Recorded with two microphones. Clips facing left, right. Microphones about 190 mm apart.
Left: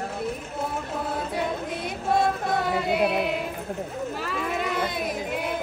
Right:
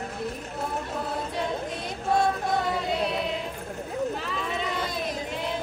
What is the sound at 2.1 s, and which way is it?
Music, 5° left (ahead or behind).